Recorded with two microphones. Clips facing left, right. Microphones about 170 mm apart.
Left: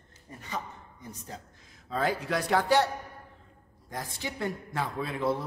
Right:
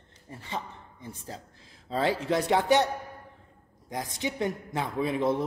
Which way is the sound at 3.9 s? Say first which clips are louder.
Right 4 dB; 15° right (ahead or behind).